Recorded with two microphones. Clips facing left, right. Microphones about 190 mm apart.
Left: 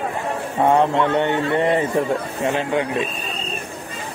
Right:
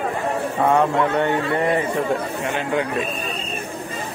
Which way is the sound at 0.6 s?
25° left (ahead or behind).